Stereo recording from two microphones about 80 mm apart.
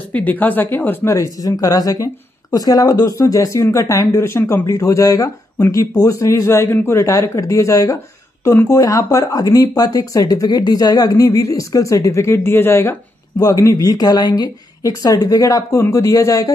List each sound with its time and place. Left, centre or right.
0.1 s speech: left
1.0 s speech: left
4.6 s speech: left
13.4 s speech: left